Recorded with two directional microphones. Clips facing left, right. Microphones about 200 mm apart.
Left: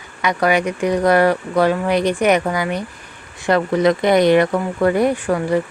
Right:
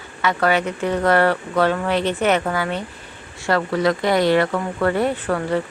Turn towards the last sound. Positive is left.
turn(degrees=15)  # may be behind; listen again after turning